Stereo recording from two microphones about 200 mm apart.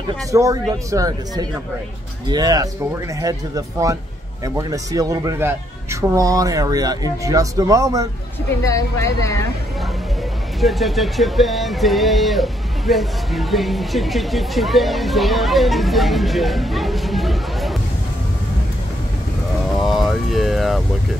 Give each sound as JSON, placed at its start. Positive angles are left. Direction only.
{"t": 0.3, "sound": "speech", "side_deg": -15}
{"t": 8.6, "sound": "speech", "side_deg": 15}
{"t": 10.6, "sound": "speech", "side_deg": 0}
{"t": 19.7, "sound": "a sound", "side_deg": 0}